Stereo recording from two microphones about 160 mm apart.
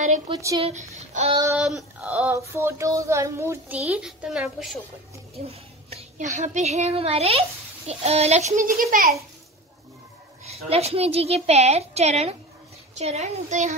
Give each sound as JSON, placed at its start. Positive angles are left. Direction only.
{"t": 0.3, "sound": "a woman's voice", "side_deg": -20}
{"t": 0.6, "sound": "a child's voice", "side_deg": -45}
{"t": 1.6, "sound": "child singing", "side_deg": -5}
{"t": 2.3, "sound": "child singing", "side_deg": -20}
{"t": 3.9, "sound": "a woman's voice", "side_deg": -5}
{"t": 5.5, "sound": "a child's voice", "side_deg": -40}
{"t": 10.7, "sound": "a woman's voice", "side_deg": -40}